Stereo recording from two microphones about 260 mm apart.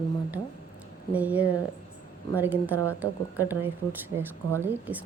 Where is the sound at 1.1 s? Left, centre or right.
Centre.